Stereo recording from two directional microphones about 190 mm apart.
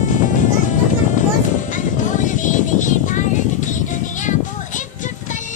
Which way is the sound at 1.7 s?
40° left (ahead or behind).